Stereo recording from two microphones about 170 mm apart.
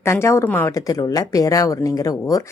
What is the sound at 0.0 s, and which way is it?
Speech, 15° left (ahead or behind).